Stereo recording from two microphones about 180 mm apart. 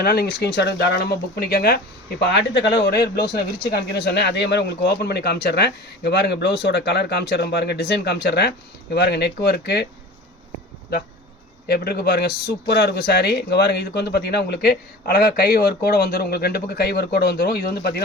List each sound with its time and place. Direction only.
0.0 s speech: 60° left (ahead or behind)
2.2 s speech: 70° left (ahead or behind)
11.7 s speech: 60° left (ahead or behind)